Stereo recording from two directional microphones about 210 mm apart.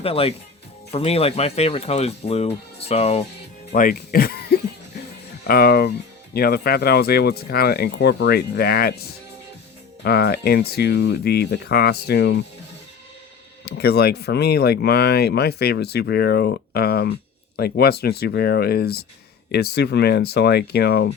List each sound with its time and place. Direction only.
0.0 s speech: 25° left (ahead or behind)
3.7 s speech: 45° left (ahead or behind)
10.0 s speech: 50° left (ahead or behind)
13.7 s speech: 50° left (ahead or behind)